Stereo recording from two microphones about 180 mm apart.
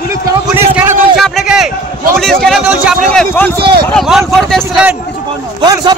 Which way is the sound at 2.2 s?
5° left (ahead or behind).